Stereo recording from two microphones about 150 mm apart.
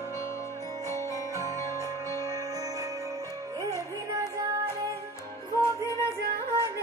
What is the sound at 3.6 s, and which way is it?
Music, 20° right (ahead or behind).